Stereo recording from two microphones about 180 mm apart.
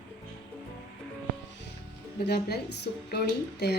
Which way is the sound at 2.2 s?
65° left (ahead or behind).